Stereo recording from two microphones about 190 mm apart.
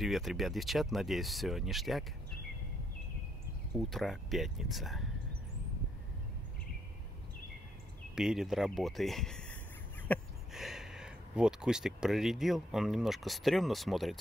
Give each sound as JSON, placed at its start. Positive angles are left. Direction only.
{"t": 0.0, "sound": "speech", "side_deg": 0}
{"t": 3.7, "sound": "speech", "side_deg": 0}
{"t": 8.1, "sound": "speech", "side_deg": -5}